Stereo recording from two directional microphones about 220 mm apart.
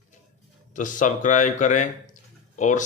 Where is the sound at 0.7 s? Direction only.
35° left (ahead or behind).